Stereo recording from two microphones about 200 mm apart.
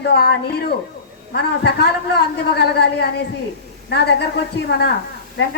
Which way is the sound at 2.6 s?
55° left (ahead or behind).